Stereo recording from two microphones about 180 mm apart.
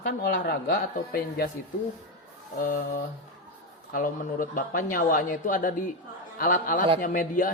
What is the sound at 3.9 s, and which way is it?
Speech, 50° left (ahead or behind).